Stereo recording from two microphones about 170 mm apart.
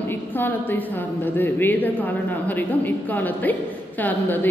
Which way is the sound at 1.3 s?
10° left (ahead or behind).